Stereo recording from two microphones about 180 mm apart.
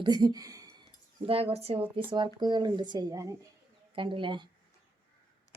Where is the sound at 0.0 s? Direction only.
25° right (ahead or behind).